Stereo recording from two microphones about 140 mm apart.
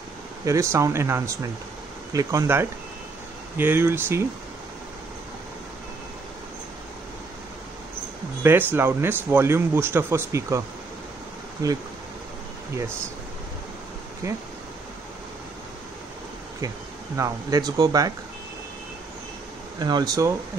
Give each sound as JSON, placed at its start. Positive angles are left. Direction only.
{"t": 0.5, "sound": "a man's voice", "side_deg": -20}
{"t": 8.4, "sound": "a man's voice", "side_deg": -15}
{"t": 11.6, "sound": "speech", "side_deg": -25}
{"t": 14.2, "sound": "speech", "side_deg": -20}
{"t": 17.2, "sound": "speech", "side_deg": -25}
{"t": 19.8, "sound": "speech", "side_deg": -30}